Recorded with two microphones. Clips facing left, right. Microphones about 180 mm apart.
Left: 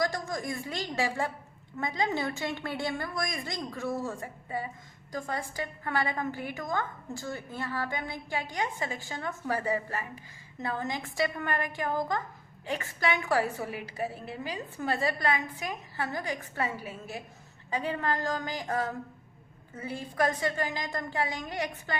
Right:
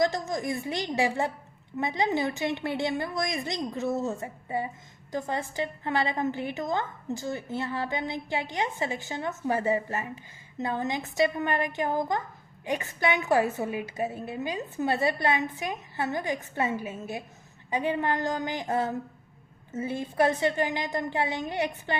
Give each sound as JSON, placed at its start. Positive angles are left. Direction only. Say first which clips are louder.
{"t": 0.0, "sound": "a woman's voice", "louder": "right 4 dB", "side_deg": -20}